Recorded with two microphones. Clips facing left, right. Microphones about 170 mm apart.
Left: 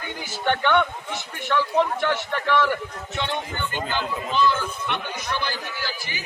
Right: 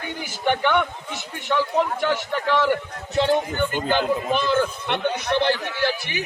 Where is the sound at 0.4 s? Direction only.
10° right (ahead or behind).